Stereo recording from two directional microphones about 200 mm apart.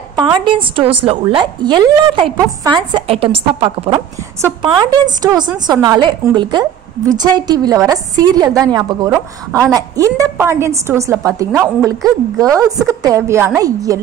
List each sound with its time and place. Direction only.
0.1 s a woman's voice: 20° right (ahead or behind)